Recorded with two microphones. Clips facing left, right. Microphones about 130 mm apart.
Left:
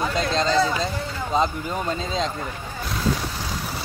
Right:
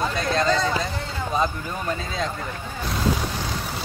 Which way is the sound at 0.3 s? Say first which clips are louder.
Even; 25° left (ahead or behind).